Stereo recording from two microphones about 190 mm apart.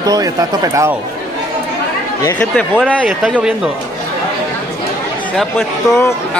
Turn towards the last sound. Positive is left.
turn(degrees=0)  # may be behind; listen again after turning